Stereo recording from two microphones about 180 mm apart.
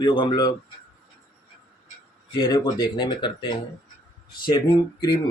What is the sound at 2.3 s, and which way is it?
Speech, 20° left (ahead or behind).